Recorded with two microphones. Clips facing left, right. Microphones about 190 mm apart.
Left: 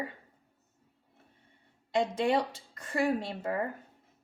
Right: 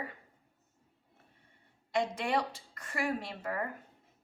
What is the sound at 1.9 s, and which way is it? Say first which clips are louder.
A woman's voice: left 4 dB; 25° left (ahead or behind).